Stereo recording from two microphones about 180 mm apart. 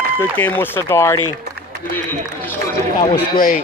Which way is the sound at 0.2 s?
10° left (ahead or behind).